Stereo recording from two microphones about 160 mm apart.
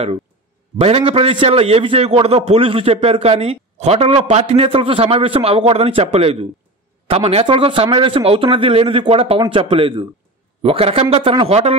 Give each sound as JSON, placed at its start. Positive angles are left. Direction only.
{"t": 0.7, "sound": "a man's voice", "side_deg": -35}